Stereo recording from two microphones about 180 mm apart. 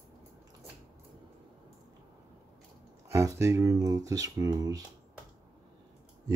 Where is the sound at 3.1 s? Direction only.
15° right (ahead or behind).